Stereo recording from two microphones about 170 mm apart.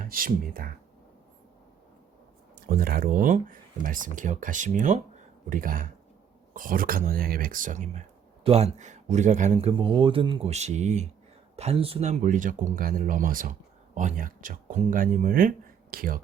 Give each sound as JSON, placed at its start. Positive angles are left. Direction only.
{"t": 0.0, "sound": "speech", "side_deg": -55}
{"t": 2.6, "sound": "speech", "side_deg": -60}
{"t": 8.4, "sound": "speech", "side_deg": -40}